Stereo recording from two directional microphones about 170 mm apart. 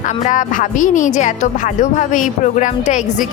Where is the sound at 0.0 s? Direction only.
50° left (ahead or behind).